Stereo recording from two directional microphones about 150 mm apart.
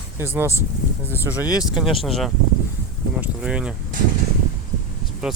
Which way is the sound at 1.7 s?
Centre (ahead or behind).